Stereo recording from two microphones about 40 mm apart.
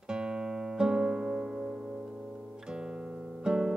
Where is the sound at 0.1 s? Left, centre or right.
Centre.